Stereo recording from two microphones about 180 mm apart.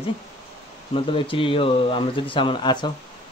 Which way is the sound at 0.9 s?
30° left (ahead or behind).